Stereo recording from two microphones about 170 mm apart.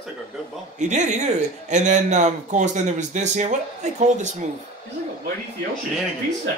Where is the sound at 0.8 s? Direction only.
45° right (ahead or behind).